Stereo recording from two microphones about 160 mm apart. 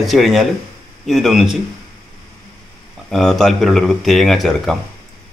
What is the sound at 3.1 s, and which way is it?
Speech, centre (ahead or behind).